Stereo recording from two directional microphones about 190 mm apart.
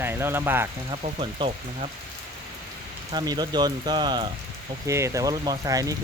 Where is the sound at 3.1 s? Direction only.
20° right (ahead or behind).